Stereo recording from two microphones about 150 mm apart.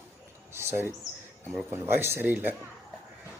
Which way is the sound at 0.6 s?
15° right (ahead or behind).